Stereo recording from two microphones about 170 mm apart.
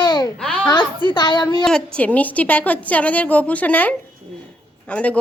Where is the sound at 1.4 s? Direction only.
5° left (ahead or behind).